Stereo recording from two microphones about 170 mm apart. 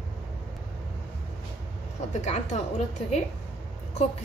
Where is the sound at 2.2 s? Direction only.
40° left (ahead or behind).